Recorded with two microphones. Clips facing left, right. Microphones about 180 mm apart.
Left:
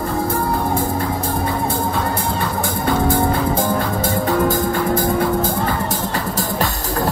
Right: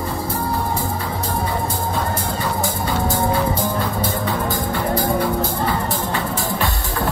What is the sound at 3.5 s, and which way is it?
Music, 45° left (ahead or behind).